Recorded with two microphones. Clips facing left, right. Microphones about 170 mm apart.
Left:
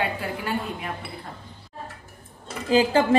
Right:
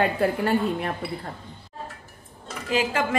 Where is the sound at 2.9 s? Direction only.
30° left (ahead or behind).